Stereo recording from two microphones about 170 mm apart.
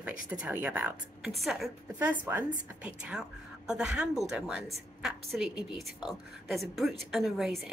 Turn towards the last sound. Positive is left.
turn(degrees=0)  # may be behind; listen again after turning